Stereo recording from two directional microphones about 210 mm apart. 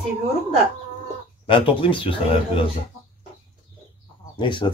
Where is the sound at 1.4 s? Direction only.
25° left (ahead or behind).